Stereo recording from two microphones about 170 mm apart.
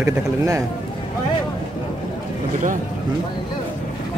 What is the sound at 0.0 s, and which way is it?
Speech, 20° right (ahead or behind).